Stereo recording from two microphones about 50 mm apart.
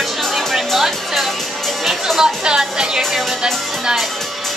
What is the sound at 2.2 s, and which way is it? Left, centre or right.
Speech, centre.